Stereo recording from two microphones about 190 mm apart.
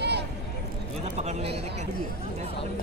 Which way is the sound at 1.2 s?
35° right (ahead or behind).